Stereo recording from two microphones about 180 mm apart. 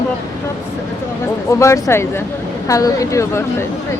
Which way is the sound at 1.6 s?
15° left (ahead or behind).